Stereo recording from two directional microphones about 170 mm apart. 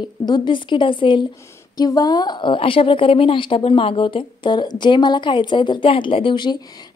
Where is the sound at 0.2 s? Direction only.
25° left (ahead or behind).